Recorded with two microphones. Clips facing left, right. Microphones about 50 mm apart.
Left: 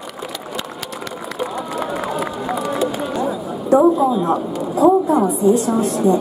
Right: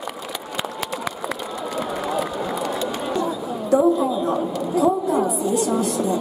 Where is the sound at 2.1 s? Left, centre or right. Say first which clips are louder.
Left 2 dB; centre.